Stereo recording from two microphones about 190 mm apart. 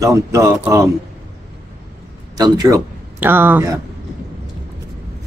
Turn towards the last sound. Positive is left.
turn(degrees=-10)  # may be behind; listen again after turning